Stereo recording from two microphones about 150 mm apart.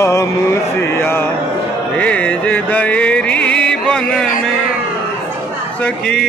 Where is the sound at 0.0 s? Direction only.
20° left (ahead or behind).